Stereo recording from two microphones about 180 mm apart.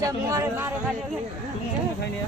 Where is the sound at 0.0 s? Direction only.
20° right (ahead or behind).